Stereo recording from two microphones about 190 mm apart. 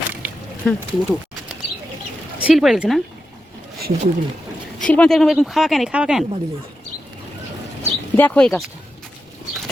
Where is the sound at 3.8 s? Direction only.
55° right (ahead or behind).